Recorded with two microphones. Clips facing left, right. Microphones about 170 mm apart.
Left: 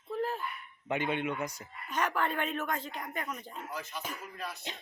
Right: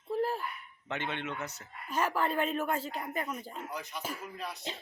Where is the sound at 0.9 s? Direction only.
10° left (ahead or behind).